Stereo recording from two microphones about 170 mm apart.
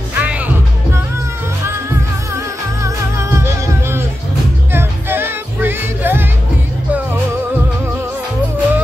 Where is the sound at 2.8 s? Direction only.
15° right (ahead or behind).